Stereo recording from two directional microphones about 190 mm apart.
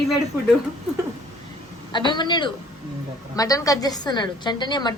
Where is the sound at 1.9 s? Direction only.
25° left (ahead or behind).